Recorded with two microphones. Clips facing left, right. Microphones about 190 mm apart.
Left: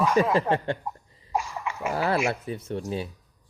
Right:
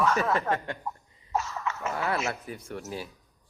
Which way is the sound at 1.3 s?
15° left (ahead or behind).